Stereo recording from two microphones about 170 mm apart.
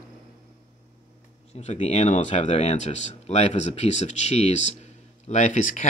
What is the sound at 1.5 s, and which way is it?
Speech, 40° left (ahead or behind).